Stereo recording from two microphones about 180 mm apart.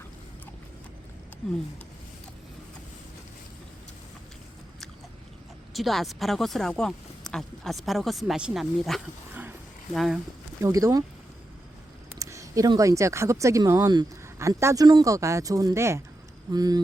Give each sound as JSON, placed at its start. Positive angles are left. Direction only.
{"t": 5.7, "sound": "speech", "side_deg": 0}
{"t": 9.3, "sound": "a sound", "side_deg": -10}
{"t": 9.9, "sound": "speech", "side_deg": 0}
{"t": 10.6, "sound": "speech", "side_deg": -15}
{"t": 12.2, "sound": "speech", "side_deg": -15}